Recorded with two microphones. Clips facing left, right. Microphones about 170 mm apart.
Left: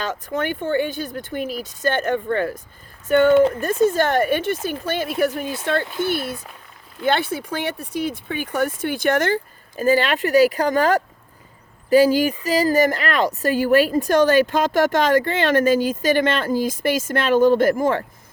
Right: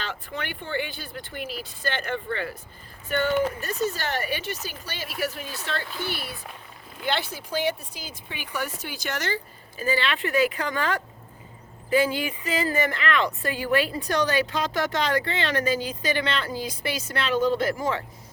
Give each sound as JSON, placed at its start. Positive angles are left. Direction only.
{"t": 0.0, "sound": "speech", "side_deg": 45}
{"t": 7.0, "sound": "speech", "side_deg": 55}